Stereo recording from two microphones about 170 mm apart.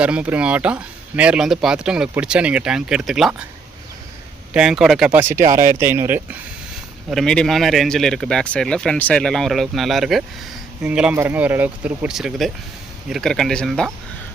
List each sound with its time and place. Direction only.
0.0 s speech: 5° right (ahead or behind)
4.5 s speech: 5° right (ahead or behind)
7.1 s speech: 5° left (ahead or behind)